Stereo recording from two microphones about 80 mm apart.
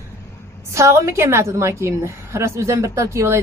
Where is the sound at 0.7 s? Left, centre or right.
Right.